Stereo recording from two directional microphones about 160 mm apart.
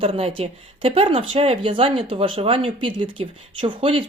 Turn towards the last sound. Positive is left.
turn(degrees=-35)  # may be behind; listen again after turning